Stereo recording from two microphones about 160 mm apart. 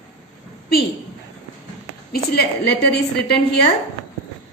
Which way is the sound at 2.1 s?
90° left.